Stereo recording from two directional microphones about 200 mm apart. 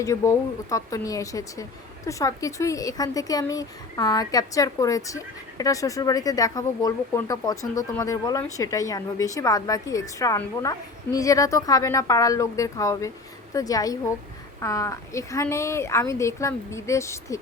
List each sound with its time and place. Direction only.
0.0 s speech: 15° left (ahead or behind)